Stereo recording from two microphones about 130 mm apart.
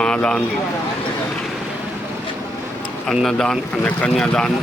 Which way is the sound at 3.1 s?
Centre (ahead or behind).